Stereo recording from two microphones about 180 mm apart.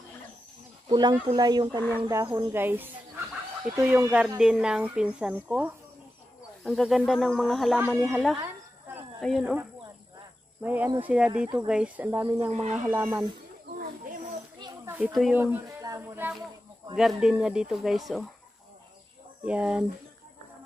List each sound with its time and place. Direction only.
0.8 s speech: 25° right (ahead or behind)
2.2 s speech: 25° right (ahead or behind)
2.5 s speech: 10° right (ahead or behind)
8.4 s a sound: 15° right (ahead or behind)
9.2 s speech: centre (ahead or behind)
10.6 s speech: 10° right (ahead or behind)
14.9 s a sound: 10° right (ahead or behind)
16.9 s speech: centre (ahead or behind)
19.4 s speech: 5° right (ahead or behind)